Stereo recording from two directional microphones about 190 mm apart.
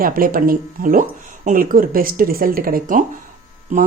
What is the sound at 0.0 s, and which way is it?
A woman's voice, 50° right (ahead or behind).